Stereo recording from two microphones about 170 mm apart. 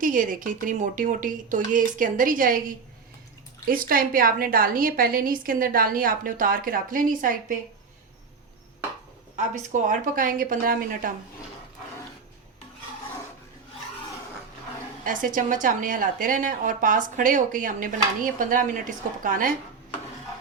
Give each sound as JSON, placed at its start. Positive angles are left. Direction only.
{"t": 0.0, "sound": "a woman's voice", "side_deg": -50}
{"t": 9.3, "sound": "a woman's voice", "side_deg": -45}
{"t": 15.0, "sound": "a woman's voice", "side_deg": -50}